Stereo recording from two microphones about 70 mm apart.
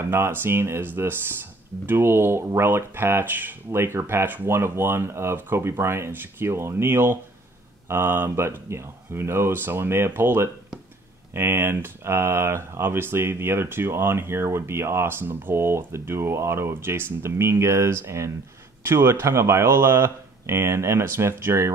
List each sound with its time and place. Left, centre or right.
0.1 s speech: right